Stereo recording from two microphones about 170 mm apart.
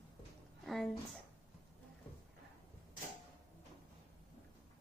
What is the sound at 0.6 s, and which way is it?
Speech, centre (ahead or behind).